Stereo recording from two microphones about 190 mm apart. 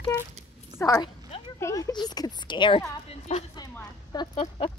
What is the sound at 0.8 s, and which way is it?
A woman's voice, 20° left (ahead or behind).